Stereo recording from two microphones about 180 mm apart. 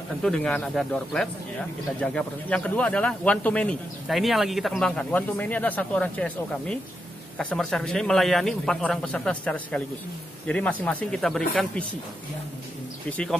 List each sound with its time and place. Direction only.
0.2 s a man's voice: 5° left (ahead or behind)